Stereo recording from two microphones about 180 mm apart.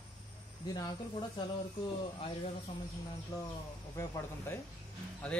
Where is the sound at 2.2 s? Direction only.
30° left (ahead or behind).